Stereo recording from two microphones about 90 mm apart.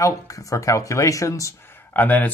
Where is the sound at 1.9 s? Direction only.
20° left (ahead or behind).